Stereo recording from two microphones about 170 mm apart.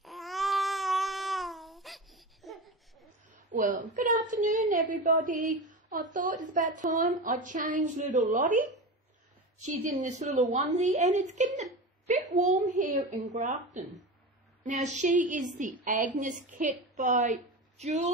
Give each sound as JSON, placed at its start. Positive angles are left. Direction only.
{"t": 0.0, "sound": "babbling", "side_deg": 0}
{"t": 3.5, "sound": "a woman's voice", "side_deg": -50}